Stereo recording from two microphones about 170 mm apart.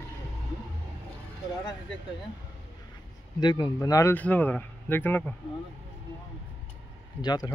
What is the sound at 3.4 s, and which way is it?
Speech, 25° left (ahead or behind).